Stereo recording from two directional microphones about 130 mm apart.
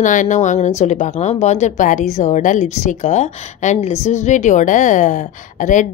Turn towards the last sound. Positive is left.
turn(degrees=80)